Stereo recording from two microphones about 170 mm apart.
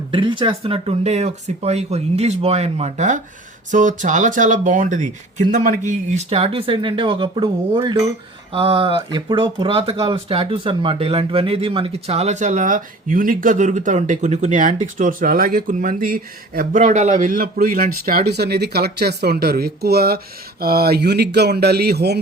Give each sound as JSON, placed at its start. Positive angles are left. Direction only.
{"t": 0.1, "sound": "speech", "side_deg": -30}